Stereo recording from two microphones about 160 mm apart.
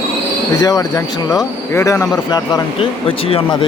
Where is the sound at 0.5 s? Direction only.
20° left (ahead or behind).